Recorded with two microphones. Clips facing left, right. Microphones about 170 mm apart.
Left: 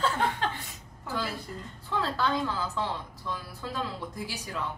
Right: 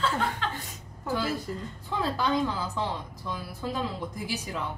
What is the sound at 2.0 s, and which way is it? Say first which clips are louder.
A woman's voice: right 3 dB; 15° right (ahead or behind).